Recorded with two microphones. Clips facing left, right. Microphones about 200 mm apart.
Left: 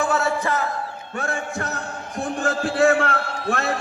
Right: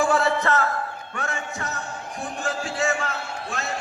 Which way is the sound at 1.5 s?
60° left (ahead or behind).